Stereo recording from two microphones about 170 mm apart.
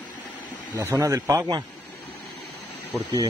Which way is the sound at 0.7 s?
15° right (ahead or behind).